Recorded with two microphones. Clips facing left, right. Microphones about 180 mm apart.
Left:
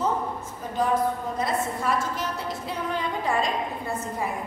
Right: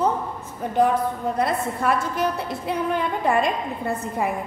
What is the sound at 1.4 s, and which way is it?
A woman's voice, 60° right (ahead or behind).